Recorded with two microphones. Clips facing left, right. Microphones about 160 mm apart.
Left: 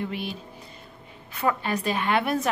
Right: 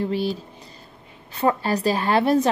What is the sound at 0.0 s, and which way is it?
A woman's voice, 35° right (ahead or behind).